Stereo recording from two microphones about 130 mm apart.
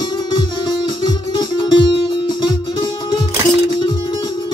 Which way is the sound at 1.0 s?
35° left (ahead or behind).